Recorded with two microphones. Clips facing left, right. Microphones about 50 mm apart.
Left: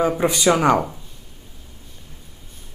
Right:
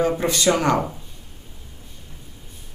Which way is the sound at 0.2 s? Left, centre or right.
Centre.